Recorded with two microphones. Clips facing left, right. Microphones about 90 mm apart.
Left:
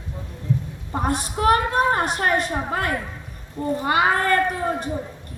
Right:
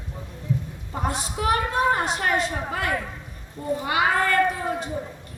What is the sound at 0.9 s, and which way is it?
A woman's voice, 55° left (ahead or behind).